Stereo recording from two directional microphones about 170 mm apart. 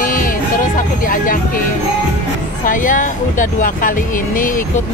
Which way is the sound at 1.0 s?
55° left (ahead or behind).